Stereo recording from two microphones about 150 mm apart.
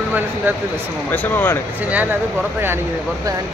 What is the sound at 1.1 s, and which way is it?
Speech, 10° left (ahead or behind).